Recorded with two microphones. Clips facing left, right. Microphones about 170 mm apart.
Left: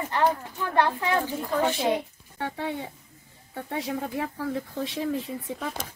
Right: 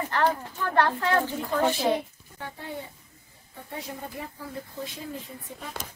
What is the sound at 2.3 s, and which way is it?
Speech, 75° left (ahead or behind).